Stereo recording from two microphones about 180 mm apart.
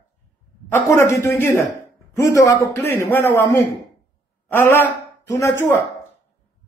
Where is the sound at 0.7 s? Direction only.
15° left (ahead or behind).